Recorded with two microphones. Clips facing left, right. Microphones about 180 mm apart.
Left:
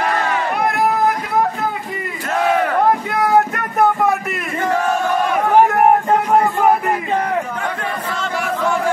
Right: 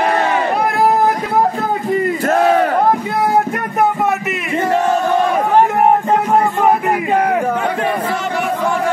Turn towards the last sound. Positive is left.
turn(degrees=0)  # may be behind; listen again after turning